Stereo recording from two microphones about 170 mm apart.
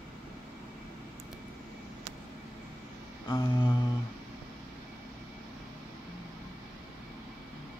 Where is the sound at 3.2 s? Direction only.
25° left (ahead or behind).